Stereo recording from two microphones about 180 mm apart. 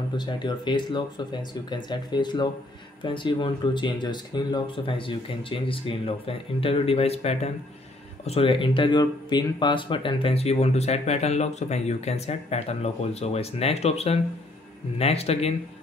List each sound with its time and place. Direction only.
0.4 s speech: 25° left (ahead or behind)